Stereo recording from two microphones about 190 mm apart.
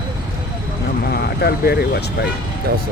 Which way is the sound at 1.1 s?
55° left (ahead or behind).